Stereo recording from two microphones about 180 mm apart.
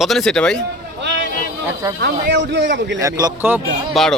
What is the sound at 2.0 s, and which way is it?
Speech, 70° right (ahead or behind).